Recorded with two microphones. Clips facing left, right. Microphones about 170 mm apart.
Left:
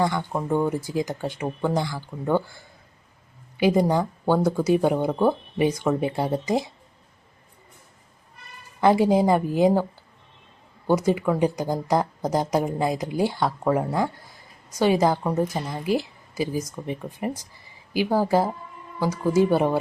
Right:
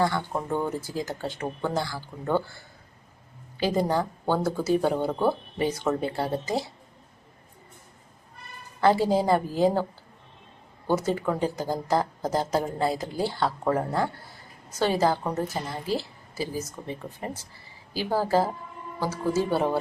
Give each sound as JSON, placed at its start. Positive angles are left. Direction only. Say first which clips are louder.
{"t": 0.0, "sound": "speech", "louder": "left 2 dB", "side_deg": 15}
{"t": 3.6, "sound": "speech", "louder": "left 4 dB", "side_deg": 15}
{"t": 8.8, "sound": "speech", "louder": "left 3 dB", "side_deg": 15}
{"t": 10.8, "sound": "speech", "louder": "left 4 dB", "side_deg": 15}